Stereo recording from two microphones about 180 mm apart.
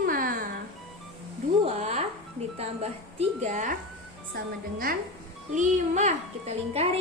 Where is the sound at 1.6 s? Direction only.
40° right (ahead or behind).